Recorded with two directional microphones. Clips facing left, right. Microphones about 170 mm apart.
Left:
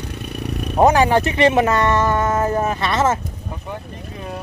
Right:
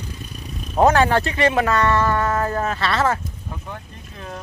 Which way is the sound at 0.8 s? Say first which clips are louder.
Left 2 dB; 15° left (ahead or behind).